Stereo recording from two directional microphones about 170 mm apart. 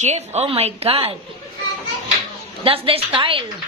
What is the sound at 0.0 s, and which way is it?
A woman's voice, 40° right (ahead or behind).